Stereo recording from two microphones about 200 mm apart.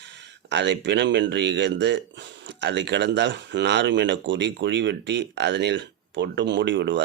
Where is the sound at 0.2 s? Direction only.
60° right (ahead or behind).